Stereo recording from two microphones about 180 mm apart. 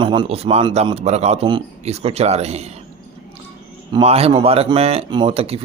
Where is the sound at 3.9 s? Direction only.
35° right (ahead or behind).